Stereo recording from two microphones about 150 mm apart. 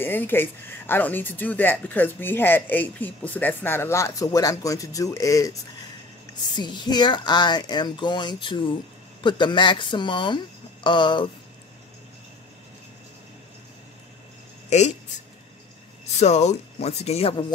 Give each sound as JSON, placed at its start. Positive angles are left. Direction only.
{"t": 0.0, "sound": "speech", "side_deg": 15}
{"t": 16.2, "sound": "speech", "side_deg": 50}